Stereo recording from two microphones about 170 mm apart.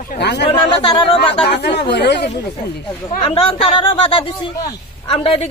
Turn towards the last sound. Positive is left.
turn(degrees=35)  # may be behind; listen again after turning